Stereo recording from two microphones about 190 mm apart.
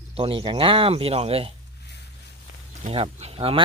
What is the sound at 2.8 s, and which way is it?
Speech, 30° right (ahead or behind).